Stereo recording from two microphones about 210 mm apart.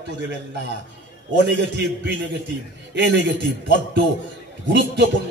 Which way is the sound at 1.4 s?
55° right (ahead or behind).